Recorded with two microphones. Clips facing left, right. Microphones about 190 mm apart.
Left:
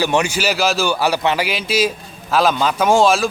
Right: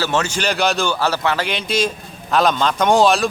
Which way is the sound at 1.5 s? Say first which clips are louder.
Left 2 dB; 5° left (ahead or behind).